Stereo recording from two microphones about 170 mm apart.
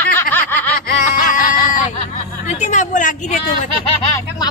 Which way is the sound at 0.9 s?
50° left (ahead or behind).